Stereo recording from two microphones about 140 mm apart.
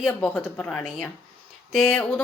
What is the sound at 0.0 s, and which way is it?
Speech, 15° left (ahead or behind).